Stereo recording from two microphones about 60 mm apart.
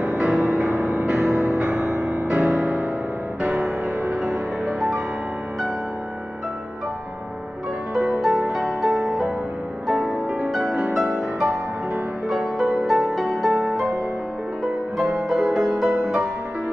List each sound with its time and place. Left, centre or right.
0.0 s music: centre
4.7 s music: centre
8.0 s music: centre
15.0 s music: centre